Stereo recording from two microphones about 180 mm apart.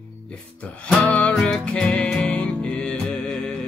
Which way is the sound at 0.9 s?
5° left (ahead or behind).